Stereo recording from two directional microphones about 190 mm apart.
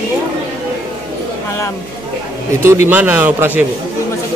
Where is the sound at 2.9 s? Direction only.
10° right (ahead or behind).